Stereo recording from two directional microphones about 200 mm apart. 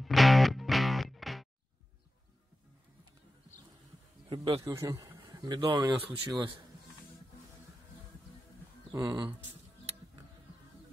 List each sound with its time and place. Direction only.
0.0 s music: centre (ahead or behind)
4.3 s a man's voice: 20° right (ahead or behind)
8.9 s a man's voice: 20° right (ahead or behind)